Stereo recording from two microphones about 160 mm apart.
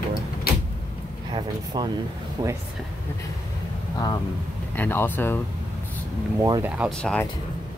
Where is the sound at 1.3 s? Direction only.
25° right (ahead or behind).